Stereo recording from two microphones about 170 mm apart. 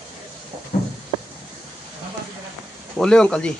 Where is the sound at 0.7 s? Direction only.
50° left (ahead or behind).